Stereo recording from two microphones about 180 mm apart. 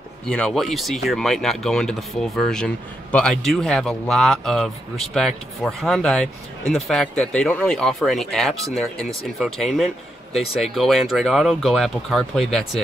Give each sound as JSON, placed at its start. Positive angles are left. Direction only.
{"t": 0.3, "sound": "speech", "side_deg": 5}